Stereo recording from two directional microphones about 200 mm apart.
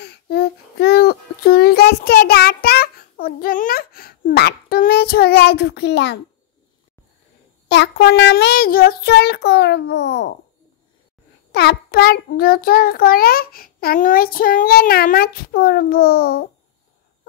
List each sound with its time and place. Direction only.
0.0 s child singing: 55° left (ahead or behind)
7.6 s child singing: 60° left (ahead or behind)
11.5 s child singing: 55° left (ahead or behind)